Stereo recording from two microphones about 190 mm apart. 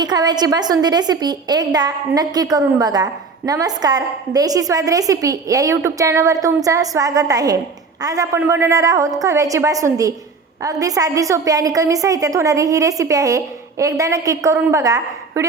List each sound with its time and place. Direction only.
0.0 s a woman's voice: 20° right (ahead or behind)